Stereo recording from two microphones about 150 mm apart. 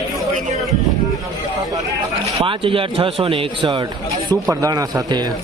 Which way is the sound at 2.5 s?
35° right (ahead or behind).